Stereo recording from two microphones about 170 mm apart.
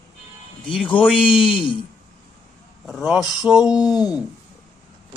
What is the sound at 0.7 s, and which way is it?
Speech, 5° left (ahead or behind).